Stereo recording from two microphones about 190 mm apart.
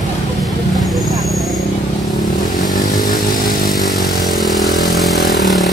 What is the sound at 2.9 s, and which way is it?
Motorcycle, 20° left (ahead or behind).